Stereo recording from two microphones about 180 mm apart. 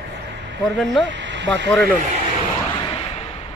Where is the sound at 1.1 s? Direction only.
80° right.